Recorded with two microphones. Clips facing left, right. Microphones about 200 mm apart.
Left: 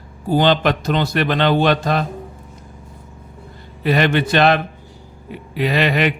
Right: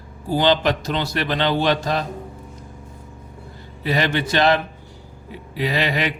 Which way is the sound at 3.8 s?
60° left (ahead or behind).